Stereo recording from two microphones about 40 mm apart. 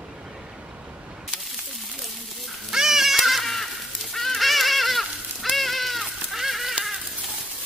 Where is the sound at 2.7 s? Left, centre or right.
Centre.